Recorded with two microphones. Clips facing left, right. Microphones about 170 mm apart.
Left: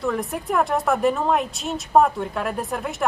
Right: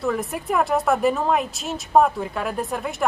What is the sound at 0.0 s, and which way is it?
Speech, centre (ahead or behind).